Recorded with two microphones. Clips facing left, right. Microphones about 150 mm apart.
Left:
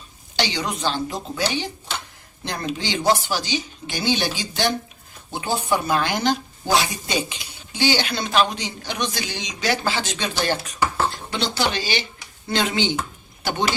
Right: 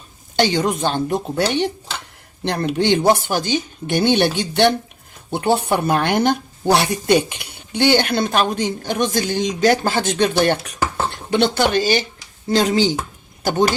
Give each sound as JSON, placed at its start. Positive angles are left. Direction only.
{"t": 0.3, "sound": "speech", "side_deg": -50}